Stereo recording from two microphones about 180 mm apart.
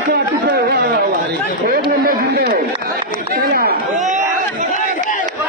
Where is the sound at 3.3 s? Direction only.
55° right (ahead or behind).